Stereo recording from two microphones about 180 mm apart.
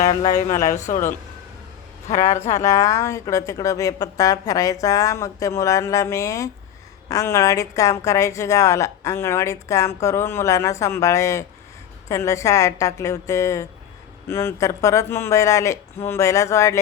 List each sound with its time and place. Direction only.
0.0 s speech: 30° left (ahead or behind)
2.2 s speech: 40° left (ahead or behind)
2.6 s a woman's voice: 20° left (ahead or behind)